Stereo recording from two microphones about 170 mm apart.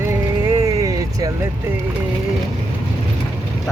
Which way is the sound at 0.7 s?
20° right (ahead or behind).